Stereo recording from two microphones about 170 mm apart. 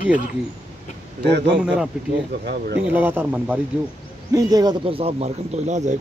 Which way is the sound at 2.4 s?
70° right (ahead or behind).